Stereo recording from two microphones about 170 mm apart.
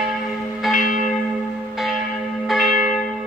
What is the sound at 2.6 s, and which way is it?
Church bell, 50° left (ahead or behind).